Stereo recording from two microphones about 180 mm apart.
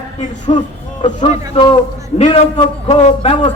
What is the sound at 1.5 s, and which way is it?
A man's voice, 25° left (ahead or behind).